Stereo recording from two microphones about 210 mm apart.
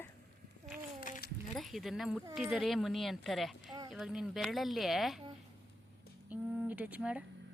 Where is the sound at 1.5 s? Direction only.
Centre (ahead or behind).